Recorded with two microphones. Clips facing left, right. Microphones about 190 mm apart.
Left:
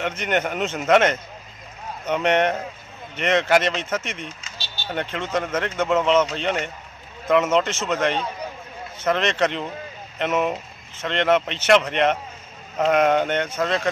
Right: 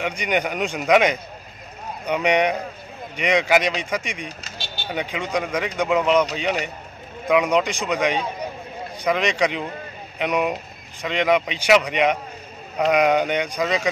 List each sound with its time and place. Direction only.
0.0 s a man's voice: 10° right (ahead or behind)
4.4 s a sound: 35° right (ahead or behind)
4.8 s a man's voice: 10° right (ahead or behind)
13.6 s speech: centre (ahead or behind)